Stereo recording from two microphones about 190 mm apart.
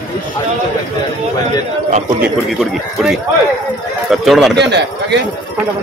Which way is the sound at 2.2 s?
Centre (ahead or behind).